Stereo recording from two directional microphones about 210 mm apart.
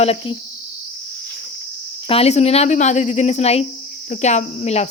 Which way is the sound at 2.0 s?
30° left (ahead or behind).